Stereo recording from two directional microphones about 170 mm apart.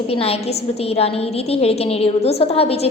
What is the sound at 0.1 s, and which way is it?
A woman's voice, 35° left (ahead or behind).